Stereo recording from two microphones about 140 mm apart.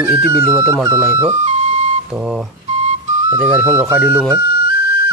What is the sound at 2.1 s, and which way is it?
Speech, 5° right (ahead or behind).